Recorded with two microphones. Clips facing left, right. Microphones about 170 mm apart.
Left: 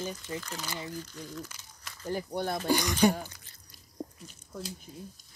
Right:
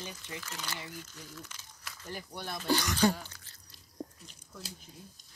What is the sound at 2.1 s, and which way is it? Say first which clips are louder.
Speech: left 9 dB; 45° left (ahead or behind).